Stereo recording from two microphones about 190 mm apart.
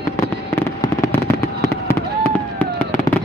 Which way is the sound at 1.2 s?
15° left (ahead or behind).